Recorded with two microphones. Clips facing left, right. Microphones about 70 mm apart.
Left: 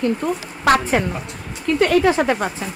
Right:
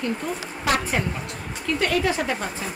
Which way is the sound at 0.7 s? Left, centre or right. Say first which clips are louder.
Left 7 dB; left.